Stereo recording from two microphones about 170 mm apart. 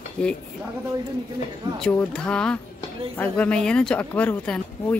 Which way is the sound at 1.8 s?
5° left (ahead or behind).